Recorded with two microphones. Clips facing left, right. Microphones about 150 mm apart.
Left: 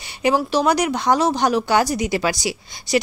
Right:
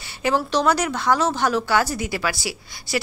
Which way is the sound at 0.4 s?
10° left (ahead or behind).